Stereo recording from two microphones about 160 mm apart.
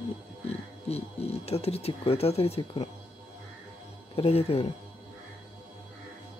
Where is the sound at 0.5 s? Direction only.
40° left (ahead or behind).